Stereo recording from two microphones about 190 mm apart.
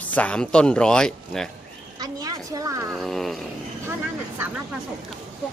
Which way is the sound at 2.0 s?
20° right (ahead or behind).